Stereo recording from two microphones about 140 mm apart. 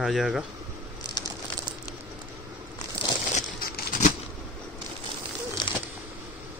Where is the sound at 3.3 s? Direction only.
60° left (ahead or behind).